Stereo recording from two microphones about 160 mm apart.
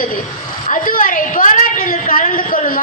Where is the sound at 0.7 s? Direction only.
60° left (ahead or behind).